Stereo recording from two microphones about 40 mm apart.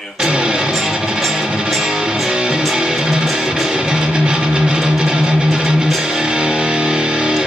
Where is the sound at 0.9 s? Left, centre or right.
Centre.